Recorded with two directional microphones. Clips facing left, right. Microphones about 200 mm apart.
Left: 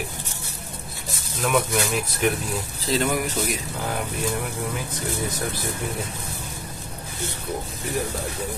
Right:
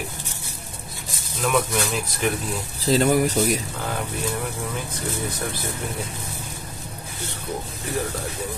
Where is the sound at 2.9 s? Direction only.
35° right (ahead or behind).